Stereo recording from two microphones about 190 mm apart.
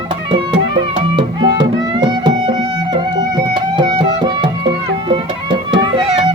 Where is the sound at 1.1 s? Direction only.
25° right (ahead or behind).